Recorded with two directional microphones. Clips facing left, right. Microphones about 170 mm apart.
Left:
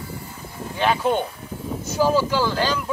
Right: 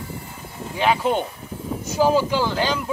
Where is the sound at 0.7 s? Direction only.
15° right (ahead or behind).